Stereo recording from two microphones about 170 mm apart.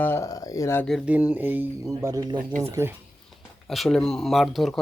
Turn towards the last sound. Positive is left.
turn(degrees=0)  # may be behind; listen again after turning